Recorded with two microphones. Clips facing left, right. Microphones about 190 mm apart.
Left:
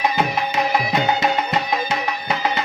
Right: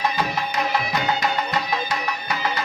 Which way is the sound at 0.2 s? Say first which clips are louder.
Left 4 dB; 25° left (ahead or behind).